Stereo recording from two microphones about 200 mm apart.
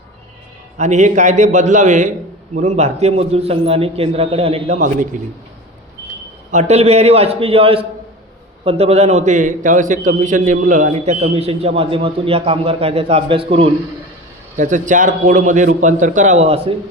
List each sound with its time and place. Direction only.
0.8 s a man's voice: 35° right (ahead or behind)
6.5 s a man's voice: 35° right (ahead or behind)
14.5 s a man's voice: 40° right (ahead or behind)